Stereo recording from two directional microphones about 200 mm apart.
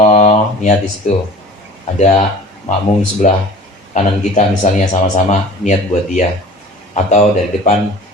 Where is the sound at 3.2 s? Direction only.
40° left (ahead or behind).